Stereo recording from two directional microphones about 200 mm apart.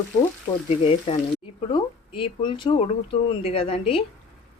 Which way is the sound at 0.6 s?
30° left (ahead or behind).